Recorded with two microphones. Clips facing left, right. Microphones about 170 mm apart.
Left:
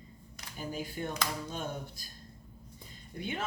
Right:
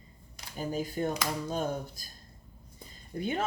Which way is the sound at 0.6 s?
40° right (ahead or behind).